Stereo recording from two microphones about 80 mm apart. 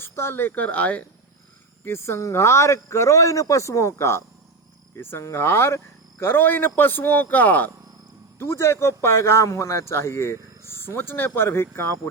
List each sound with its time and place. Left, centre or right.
0.0 s speech: left
1.8 s speech: left
8.4 s speech: left